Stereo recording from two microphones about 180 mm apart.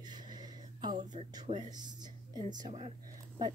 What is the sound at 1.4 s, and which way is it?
Speech, 25° right (ahead or behind).